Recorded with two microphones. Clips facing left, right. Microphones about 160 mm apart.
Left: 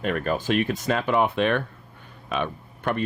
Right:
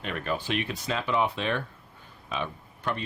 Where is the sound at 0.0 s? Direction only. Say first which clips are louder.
Left 6 dB; 50° left (ahead or behind).